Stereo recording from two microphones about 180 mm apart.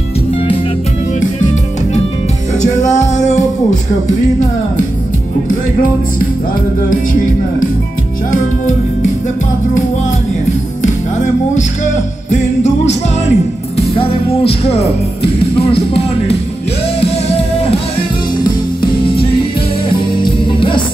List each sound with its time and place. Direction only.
2.6 s music: 40° left (ahead or behind)
5.5 s music: 50° left (ahead or behind)
8.3 s music: 45° left (ahead or behind)
12.3 s music: 40° left (ahead or behind)